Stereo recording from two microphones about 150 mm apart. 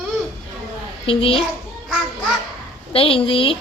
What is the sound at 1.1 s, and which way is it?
Speech, 40° left (ahead or behind).